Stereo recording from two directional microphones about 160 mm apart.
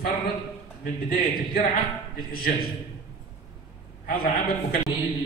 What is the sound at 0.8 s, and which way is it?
A man's voice, 60° left (ahead or behind).